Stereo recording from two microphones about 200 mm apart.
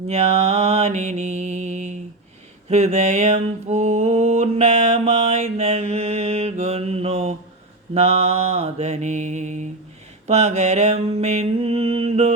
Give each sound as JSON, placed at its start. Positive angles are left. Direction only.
{"t": 0.1, "sound": "mantra", "side_deg": -30}